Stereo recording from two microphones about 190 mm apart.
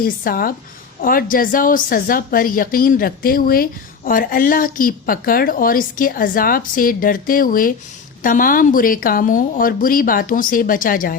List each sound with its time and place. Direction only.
0.0 s a woman's voice: 50° left (ahead or behind)